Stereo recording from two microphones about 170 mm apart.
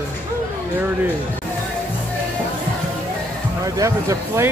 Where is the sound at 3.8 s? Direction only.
20° right (ahead or behind).